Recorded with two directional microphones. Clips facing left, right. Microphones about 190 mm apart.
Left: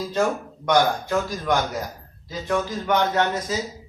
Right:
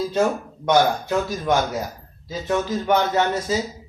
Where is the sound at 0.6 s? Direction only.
25° right (ahead or behind).